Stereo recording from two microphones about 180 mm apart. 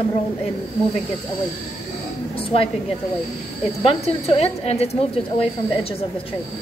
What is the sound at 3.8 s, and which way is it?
A woman's voice, 35° left (ahead or behind).